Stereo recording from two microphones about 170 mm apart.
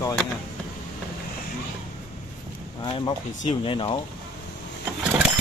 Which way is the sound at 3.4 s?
35° left (ahead or behind).